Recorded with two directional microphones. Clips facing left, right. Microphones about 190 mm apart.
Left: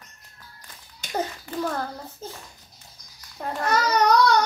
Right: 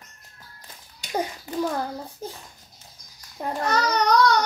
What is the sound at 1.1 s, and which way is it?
A child's voice, 15° right (ahead or behind).